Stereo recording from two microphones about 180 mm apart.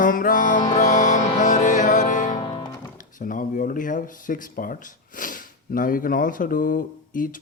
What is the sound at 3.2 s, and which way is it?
Speech, 45° left (ahead or behind).